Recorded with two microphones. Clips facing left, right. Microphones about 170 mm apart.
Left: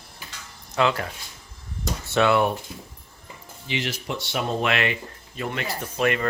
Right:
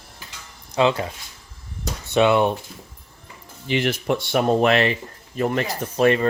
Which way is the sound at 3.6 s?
55° right (ahead or behind).